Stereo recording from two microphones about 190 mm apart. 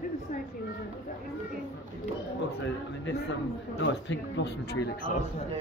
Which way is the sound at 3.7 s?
70° left (ahead or behind).